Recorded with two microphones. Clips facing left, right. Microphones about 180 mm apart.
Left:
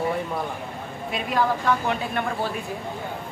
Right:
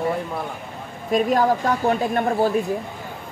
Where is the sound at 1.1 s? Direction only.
45° right (ahead or behind).